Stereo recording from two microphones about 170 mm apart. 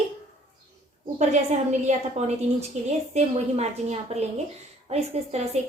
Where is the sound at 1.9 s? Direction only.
40° right (ahead or behind).